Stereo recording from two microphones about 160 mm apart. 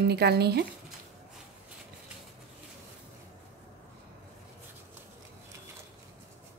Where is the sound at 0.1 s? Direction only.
90° right.